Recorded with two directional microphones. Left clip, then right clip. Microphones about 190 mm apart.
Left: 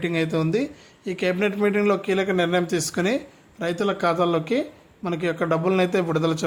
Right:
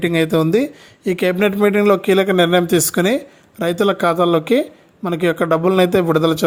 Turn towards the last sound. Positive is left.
turn(degrees=-30)  # may be behind; listen again after turning